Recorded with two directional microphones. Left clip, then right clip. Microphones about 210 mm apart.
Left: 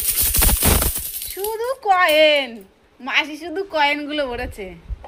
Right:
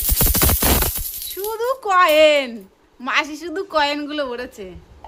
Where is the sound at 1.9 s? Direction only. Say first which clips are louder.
Right 1 dB; 20° right (ahead or behind).